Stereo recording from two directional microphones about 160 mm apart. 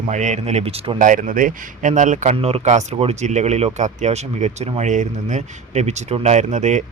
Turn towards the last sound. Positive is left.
turn(degrees=-50)  # may be behind; listen again after turning